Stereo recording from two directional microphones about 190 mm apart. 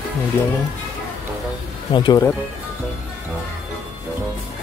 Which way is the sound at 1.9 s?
20° left (ahead or behind).